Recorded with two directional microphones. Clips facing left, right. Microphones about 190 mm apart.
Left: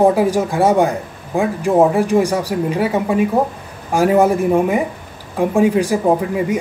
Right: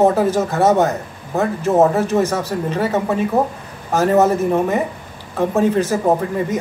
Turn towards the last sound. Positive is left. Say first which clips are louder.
# left 1 dB
turn(degrees=10)  # may be behind; listen again after turning